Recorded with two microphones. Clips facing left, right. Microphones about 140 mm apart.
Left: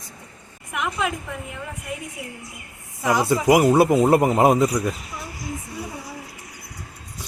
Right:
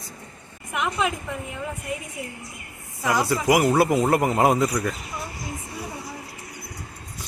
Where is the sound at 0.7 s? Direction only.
Centre (ahead or behind).